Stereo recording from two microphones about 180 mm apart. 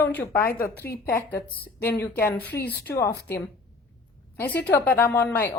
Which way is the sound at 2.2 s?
10° left (ahead or behind).